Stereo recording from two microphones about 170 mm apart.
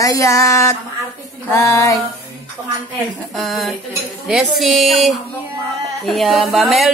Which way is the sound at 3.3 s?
Centre (ahead or behind).